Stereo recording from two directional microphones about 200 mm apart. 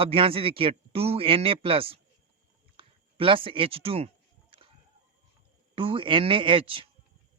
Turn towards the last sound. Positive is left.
turn(degrees=-25)  # may be behind; listen again after turning